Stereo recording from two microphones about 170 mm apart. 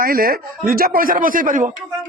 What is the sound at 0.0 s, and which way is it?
A man's voice, 60° right (ahead or behind).